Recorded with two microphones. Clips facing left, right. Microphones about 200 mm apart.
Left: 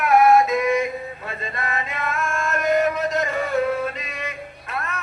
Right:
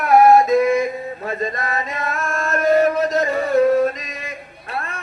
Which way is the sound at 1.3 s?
40° right (ahead or behind).